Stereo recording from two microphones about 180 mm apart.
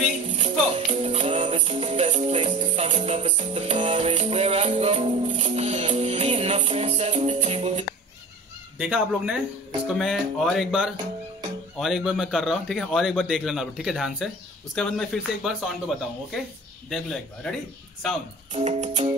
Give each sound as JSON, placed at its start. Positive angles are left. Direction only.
{"t": 0.3, "sound": "music", "side_deg": -30}
{"t": 8.7, "sound": "a man's voice", "side_deg": -5}
{"t": 16.9, "sound": "a man's voice", "side_deg": 5}
{"t": 18.5, "sound": "music", "side_deg": -35}